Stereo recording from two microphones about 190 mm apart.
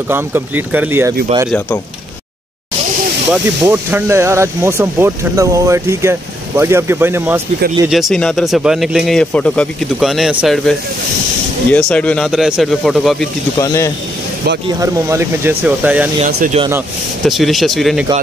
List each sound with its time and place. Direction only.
0.1 s speech: 10° right (ahead or behind)
3.3 s speech: 10° right (ahead or behind)
7.9 s speech: centre (ahead or behind)
11.9 s speech: 5° left (ahead or behind)
13.6 s speech: 15° left (ahead or behind)
14.8 s speech: 15° right (ahead or behind)
16.3 s speech: 55° right (ahead or behind)
17.2 s speech: centre (ahead or behind)